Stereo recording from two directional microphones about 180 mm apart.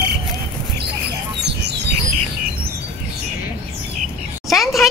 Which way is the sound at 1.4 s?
70° right (ahead or behind).